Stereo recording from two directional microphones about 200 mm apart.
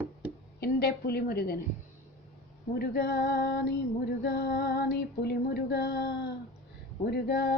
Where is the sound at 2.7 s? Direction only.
50° left (ahead or behind).